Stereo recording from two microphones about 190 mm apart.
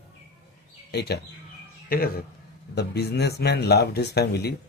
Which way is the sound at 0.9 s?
60° left (ahead or behind).